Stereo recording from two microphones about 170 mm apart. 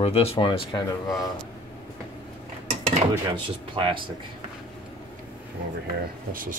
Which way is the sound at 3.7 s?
30° right (ahead or behind).